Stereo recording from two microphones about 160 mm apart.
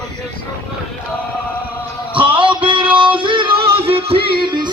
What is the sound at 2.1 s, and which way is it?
Music, 30° right (ahead or behind).